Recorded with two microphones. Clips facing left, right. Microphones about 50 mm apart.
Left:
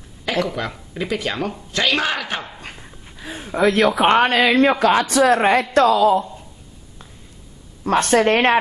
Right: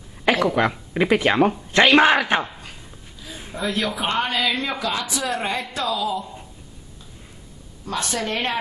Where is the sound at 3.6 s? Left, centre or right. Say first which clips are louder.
Left 9 dB; left.